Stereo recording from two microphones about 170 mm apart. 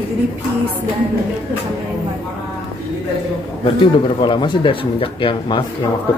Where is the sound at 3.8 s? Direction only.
30° left (ahead or behind).